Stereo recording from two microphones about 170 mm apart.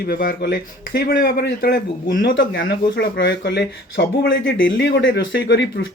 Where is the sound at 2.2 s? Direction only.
90° left.